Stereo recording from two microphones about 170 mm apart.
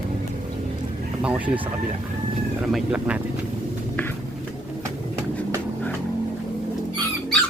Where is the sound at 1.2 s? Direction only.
10° right (ahead or behind).